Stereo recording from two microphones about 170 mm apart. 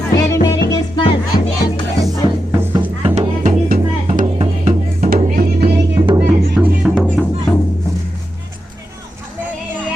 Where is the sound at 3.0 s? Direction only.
40° right (ahead or behind).